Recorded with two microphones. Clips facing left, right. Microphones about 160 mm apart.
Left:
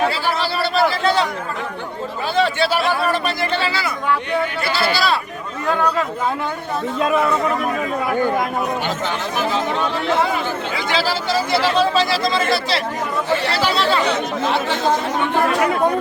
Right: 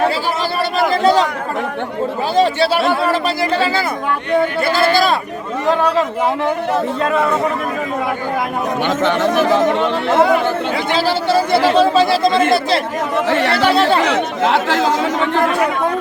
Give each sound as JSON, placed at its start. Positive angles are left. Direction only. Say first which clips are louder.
{"t": 0.9, "sound": "chatter", "louder": "right 5 dB", "side_deg": -40}
{"t": 2.3, "sound": "a man's voice", "louder": "right 3 dB", "side_deg": -35}
{"t": 8.9, "sound": "speech", "louder": "right 8 dB", "side_deg": -85}
{"t": 10.1, "sound": "a man's voice", "louder": "right 8 dB", "side_deg": -60}
{"t": 13.1, "sound": "speech", "louder": "right 5 dB", "side_deg": -75}
{"t": 14.0, "sound": "speech", "louder": "right 4 dB", "side_deg": -90}